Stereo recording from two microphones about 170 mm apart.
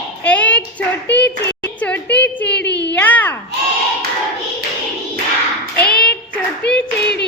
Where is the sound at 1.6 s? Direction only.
10° left (ahead or behind).